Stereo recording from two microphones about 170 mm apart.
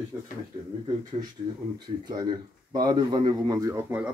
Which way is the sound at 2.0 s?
25° right (ahead or behind).